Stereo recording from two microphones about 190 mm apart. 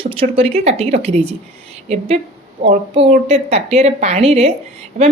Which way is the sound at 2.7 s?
35° right (ahead or behind).